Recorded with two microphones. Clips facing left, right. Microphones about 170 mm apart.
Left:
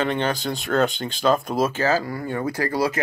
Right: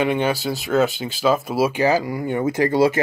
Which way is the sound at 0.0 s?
10° right (ahead or behind).